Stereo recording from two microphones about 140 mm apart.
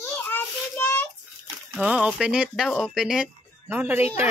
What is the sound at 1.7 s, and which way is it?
Speech, 10° right (ahead or behind).